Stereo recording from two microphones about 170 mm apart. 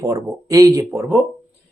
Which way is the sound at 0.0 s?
20° right (ahead or behind).